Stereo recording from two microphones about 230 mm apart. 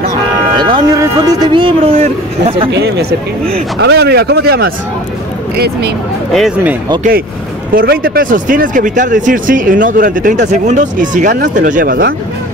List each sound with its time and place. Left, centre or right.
0.6 s speech: centre
2.7 s speech: right
6.3 s speech: centre
7.0 s speech: right